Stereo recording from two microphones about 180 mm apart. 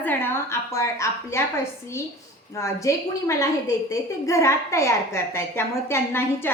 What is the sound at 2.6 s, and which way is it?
A woman's voice, 15° left (ahead or behind).